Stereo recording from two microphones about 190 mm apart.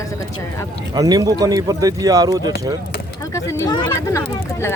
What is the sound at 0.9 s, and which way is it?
Speech, 20° right (ahead or behind).